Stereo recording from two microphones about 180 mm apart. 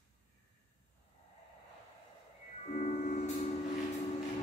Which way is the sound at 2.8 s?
45° left (ahead or behind).